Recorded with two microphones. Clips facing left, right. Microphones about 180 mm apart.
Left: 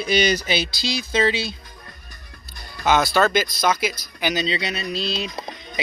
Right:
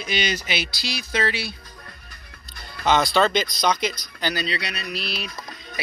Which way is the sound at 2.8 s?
5° left (ahead or behind).